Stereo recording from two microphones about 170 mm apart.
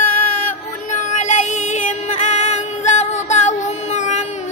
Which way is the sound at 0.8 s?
45° left (ahead or behind).